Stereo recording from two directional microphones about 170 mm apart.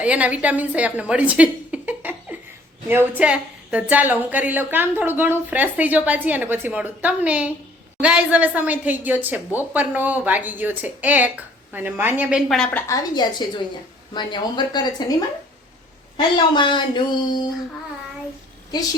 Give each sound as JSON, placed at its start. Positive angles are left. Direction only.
{"t": 0.0, "sound": "a woman's voice", "side_deg": -5}
{"t": 12.7, "sound": "speech", "side_deg": 20}
{"t": 16.1, "sound": "speech", "side_deg": 30}